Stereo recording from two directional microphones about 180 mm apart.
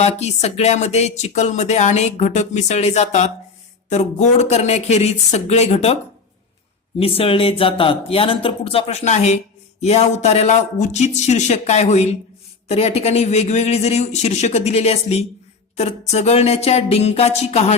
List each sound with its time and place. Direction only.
0.0 s speech: 35° left (ahead or behind)
7.0 s speech: 30° left (ahead or behind)